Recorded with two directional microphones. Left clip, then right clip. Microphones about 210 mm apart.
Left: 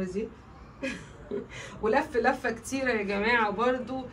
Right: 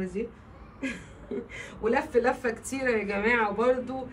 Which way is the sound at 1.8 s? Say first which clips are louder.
Even; 15° left (ahead or behind).